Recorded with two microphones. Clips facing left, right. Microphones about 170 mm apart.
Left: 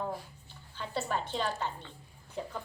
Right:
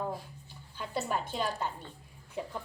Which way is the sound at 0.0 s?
5° right (ahead or behind).